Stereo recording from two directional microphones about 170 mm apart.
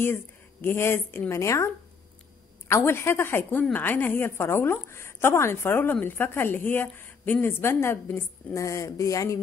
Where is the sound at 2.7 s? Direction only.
15° left (ahead or behind).